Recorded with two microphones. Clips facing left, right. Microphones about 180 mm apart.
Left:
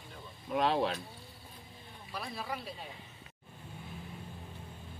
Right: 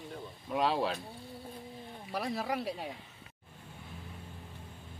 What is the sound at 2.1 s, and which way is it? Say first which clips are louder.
Speech: right 6 dB; 80° right.